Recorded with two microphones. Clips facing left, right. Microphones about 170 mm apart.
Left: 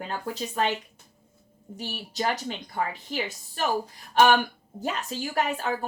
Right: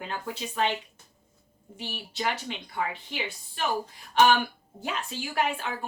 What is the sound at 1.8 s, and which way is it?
A woman's voice, 40° left (ahead or behind).